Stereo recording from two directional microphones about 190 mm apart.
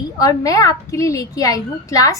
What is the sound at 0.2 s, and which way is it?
A woman's voice, 15° left (ahead or behind).